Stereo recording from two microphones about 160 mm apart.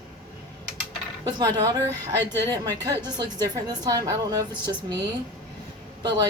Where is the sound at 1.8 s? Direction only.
15° left (ahead or behind).